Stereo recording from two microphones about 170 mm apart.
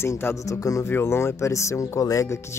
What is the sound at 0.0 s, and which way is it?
Speech, 15° left (ahead or behind).